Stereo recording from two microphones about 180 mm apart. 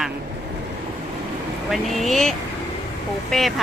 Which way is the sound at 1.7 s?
Centre (ahead or behind).